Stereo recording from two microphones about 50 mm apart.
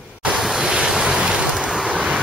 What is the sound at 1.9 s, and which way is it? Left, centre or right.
Vehicle, centre.